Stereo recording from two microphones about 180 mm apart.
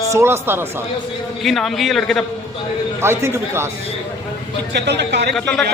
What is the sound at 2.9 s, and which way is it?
Speech, 15° right (ahead or behind).